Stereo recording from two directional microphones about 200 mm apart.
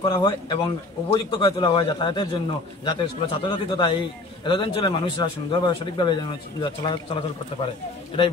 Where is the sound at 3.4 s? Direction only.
25° left (ahead or behind).